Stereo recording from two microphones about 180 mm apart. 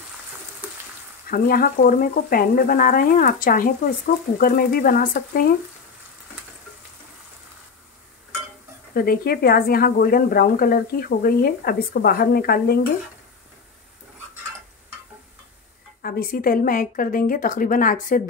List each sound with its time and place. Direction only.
1.3 s speech: 50° left (ahead or behind)
8.9 s a woman's voice: 60° left (ahead or behind)
16.0 s speech: 55° left (ahead or behind)